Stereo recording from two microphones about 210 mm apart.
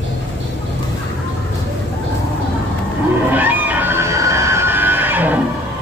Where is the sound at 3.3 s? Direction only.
10° right (ahead or behind).